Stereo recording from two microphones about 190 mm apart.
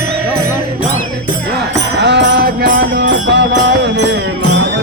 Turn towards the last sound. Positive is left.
turn(degrees=-65)  # may be behind; listen again after turning